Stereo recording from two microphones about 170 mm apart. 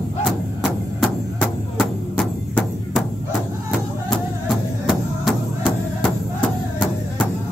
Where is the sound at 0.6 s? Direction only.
Centre (ahead or behind).